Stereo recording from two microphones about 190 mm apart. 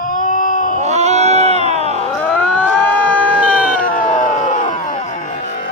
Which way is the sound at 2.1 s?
5° left (ahead or behind).